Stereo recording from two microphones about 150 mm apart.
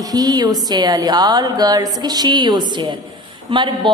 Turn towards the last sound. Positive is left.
turn(degrees=-30)  # may be behind; listen again after turning